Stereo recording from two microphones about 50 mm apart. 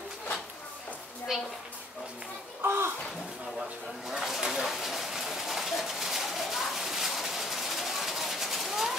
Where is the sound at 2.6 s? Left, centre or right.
Right.